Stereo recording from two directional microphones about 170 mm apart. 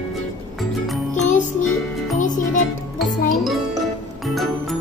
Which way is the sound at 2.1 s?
50° left (ahead or behind).